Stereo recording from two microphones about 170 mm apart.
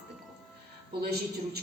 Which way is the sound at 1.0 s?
70° right (ahead or behind).